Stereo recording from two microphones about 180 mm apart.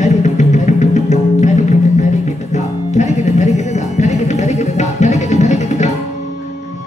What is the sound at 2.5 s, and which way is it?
Music, 40° left (ahead or behind).